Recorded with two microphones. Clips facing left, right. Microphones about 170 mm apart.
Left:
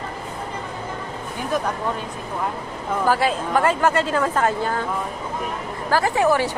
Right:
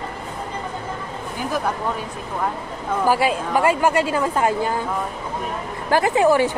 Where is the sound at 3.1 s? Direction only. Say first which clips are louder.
Right 1 dB; 10° right (ahead or behind).